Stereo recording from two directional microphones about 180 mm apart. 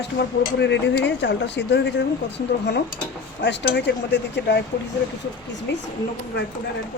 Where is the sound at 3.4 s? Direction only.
75° left (ahead or behind).